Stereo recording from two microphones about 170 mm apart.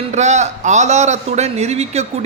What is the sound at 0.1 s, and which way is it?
A man's voice, 40° right (ahead or behind).